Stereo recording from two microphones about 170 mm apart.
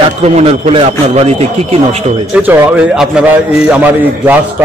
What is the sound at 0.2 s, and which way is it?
Speech, 40° right (ahead or behind).